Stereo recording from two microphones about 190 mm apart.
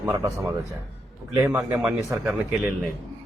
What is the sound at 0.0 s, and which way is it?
Speech, 15° right (ahead or behind).